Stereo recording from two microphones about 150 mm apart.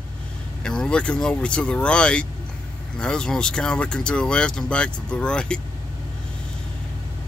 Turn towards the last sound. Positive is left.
turn(degrees=5)  # may be behind; listen again after turning